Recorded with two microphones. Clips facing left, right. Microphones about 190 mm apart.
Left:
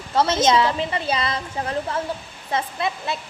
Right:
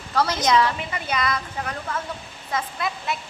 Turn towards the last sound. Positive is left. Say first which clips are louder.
# left 2 dB
turn(degrees=30)  # may be behind; listen again after turning